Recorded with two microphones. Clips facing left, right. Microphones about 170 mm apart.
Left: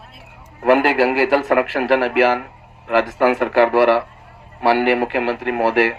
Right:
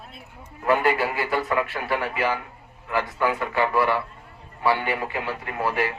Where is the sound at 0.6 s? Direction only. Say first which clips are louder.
Left 7 dB; 85° left.